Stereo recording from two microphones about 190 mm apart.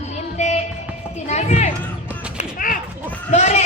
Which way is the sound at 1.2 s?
35° left (ahead or behind).